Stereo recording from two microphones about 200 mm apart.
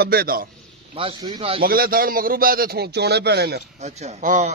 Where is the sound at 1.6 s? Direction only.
45° right (ahead or behind).